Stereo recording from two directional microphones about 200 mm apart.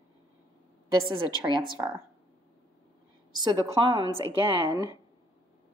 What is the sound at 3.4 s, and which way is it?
A woman's voice, 20° right (ahead or behind).